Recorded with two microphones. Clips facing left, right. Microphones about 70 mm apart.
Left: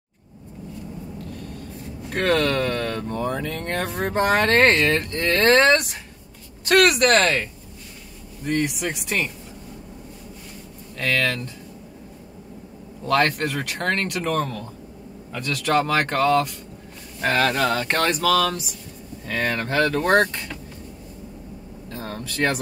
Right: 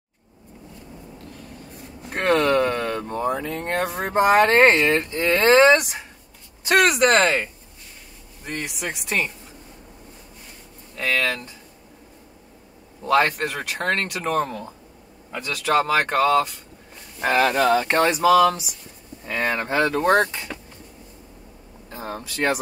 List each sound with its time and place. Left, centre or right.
1.1 s a sound: centre
2.1 s speech: centre
3.4 s speech: centre
8.5 s speech: centre
11.0 s speech: centre
13.0 s speech: centre
17.2 s speech: centre
21.9 s speech: centre